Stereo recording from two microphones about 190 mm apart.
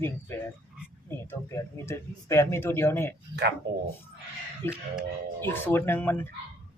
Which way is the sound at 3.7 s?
60° right (ahead or behind).